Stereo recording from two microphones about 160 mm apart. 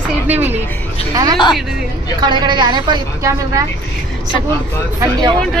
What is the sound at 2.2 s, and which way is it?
A woman's voice, 30° right (ahead or behind).